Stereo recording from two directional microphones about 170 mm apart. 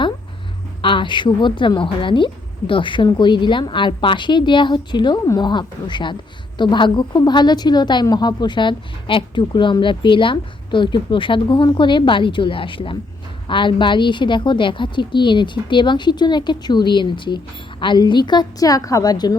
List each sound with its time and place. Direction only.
0.8 s a woman's voice: 30° left (ahead or behind)